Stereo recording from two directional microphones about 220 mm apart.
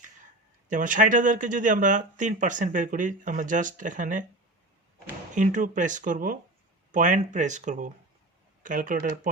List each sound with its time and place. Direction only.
0.7 s speech: 35° right (ahead or behind)
5.3 s speech: 35° right (ahead or behind)